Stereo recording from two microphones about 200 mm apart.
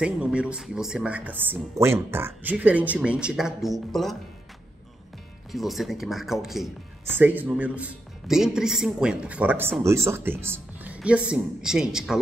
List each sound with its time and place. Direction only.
0.0 s speech: 5° right (ahead or behind)
5.5 s a man's voice: centre (ahead or behind)